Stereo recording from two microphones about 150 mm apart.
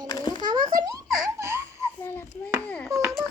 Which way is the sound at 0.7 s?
25° right (ahead or behind).